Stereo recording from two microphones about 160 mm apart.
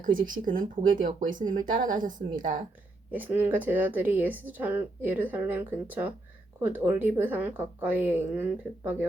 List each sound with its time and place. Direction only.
0.0 s speech: 60° right (ahead or behind)
3.1 s a woman's voice: 10° right (ahead or behind)